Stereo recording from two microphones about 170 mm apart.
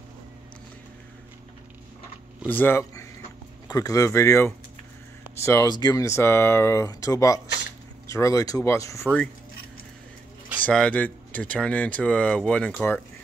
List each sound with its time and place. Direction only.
2.4 s speech: 10° left (ahead or behind)
10.6 s speech: 5° left (ahead or behind)